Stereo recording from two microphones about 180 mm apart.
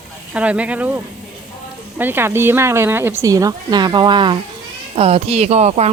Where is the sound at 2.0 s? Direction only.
10° right (ahead or behind).